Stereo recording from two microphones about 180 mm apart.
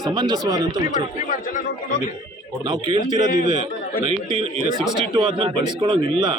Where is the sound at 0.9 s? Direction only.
45° left (ahead or behind).